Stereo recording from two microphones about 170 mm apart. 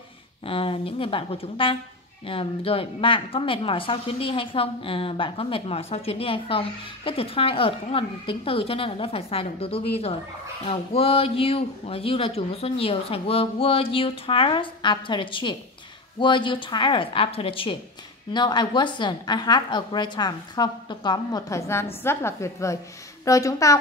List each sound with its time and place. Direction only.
0.5 s a woman's voice: 30° left (ahead or behind)